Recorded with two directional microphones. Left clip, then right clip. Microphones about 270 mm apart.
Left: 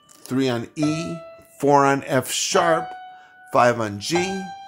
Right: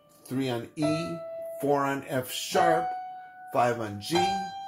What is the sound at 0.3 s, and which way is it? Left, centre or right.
Speech, left.